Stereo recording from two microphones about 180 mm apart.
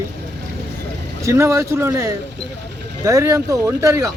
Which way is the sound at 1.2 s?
15° right (ahead or behind).